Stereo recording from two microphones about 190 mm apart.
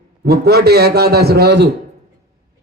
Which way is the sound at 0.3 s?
55° right (ahead or behind).